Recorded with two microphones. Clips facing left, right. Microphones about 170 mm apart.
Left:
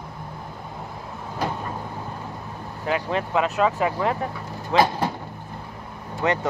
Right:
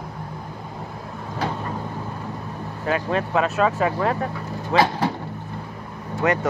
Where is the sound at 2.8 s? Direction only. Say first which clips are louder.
Right 2 dB; 20° left (ahead or behind).